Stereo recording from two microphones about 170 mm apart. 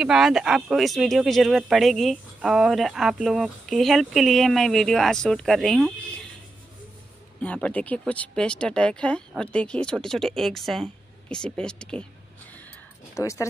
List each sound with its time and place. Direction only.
0.0 s speech: centre (ahead or behind)
7.4 s speech: 5° left (ahead or behind)
13.1 s speech: 15° left (ahead or behind)